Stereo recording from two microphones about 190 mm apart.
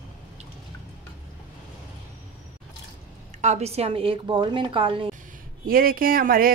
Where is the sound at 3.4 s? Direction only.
35° right (ahead or behind).